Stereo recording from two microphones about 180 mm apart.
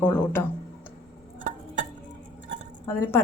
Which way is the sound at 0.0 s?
10° left (ahead or behind).